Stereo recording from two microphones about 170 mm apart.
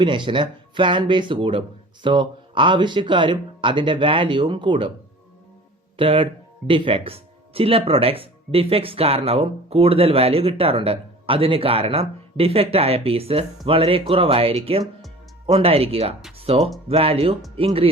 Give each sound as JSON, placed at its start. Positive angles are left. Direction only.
{"t": 0.0, "sound": "speech", "side_deg": -30}
{"t": 6.0, "sound": "speech", "side_deg": -30}